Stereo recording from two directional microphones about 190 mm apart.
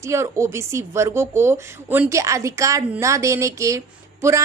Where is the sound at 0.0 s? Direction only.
15° right (ahead or behind).